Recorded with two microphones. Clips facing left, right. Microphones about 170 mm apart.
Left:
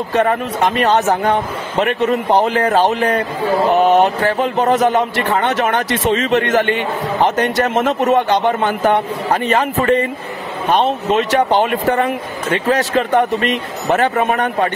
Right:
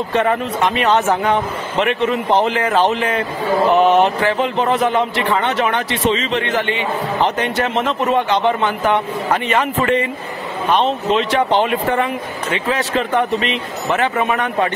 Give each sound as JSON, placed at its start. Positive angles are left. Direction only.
{"t": 0.1, "sound": "a man's voice", "side_deg": 40}